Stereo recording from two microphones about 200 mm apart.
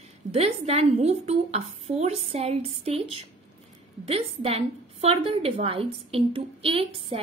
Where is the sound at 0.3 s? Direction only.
30° right (ahead or behind).